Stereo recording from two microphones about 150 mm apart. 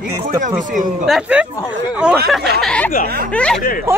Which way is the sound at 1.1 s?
5° right (ahead or behind).